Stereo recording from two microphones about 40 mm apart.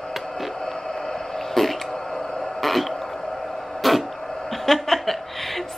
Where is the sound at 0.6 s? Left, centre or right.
Centre.